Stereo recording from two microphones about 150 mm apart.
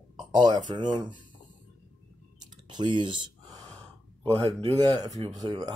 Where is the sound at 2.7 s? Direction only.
30° right (ahead or behind).